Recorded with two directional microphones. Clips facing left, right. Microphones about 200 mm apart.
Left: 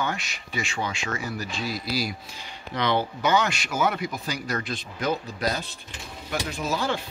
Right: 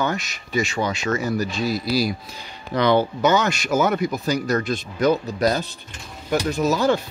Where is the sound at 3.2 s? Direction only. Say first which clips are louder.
Right 4 dB; 45° right (ahead or behind).